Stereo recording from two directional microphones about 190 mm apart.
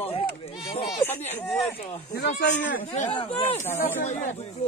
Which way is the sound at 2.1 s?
60° left (ahead or behind).